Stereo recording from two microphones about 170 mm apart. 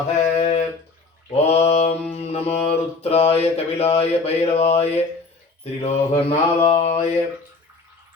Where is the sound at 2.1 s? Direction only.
35° left (ahead or behind).